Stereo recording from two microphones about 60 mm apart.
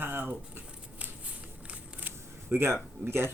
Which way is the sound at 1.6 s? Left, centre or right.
Right.